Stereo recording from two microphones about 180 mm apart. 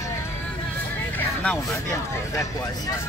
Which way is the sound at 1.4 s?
5° left (ahead or behind).